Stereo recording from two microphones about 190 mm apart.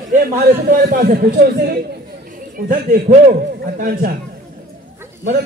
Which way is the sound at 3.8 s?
45° right (ahead or behind).